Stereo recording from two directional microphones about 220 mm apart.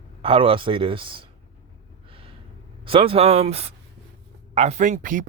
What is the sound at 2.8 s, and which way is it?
Speech, 25° right (ahead or behind).